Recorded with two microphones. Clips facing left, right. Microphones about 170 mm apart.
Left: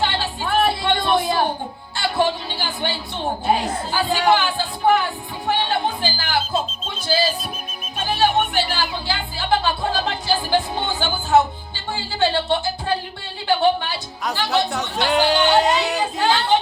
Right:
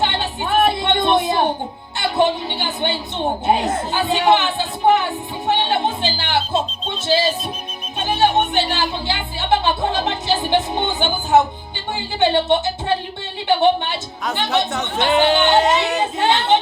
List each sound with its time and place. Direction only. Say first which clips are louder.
0.0 s a sound: right 2 dB; 20° right (ahead or behind)
7.1 s speech: right 3 dB; 25° right (ahead or behind)
15.0 s speech: right 2 dB; centre (ahead or behind)
16.2 s speech: right 2 dB; 20° right (ahead or behind)